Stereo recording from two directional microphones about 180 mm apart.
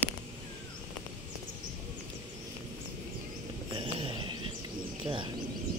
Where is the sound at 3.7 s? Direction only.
30° right (ahead or behind).